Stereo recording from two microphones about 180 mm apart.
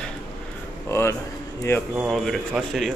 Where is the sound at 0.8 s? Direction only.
15° left (ahead or behind).